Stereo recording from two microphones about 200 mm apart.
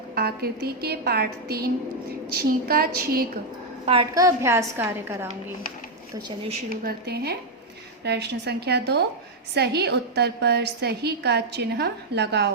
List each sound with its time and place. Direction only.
0.1 s a woman's voice: 50° right (ahead or behind)
4.1 s a woman's voice: 15° right (ahead or behind)
6.2 s speech: 25° right (ahead or behind)
6.7 s a woman's voice: 50° right (ahead or behind)